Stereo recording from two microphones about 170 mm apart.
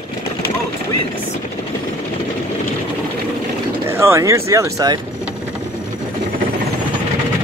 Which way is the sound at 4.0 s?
15° right (ahead or behind).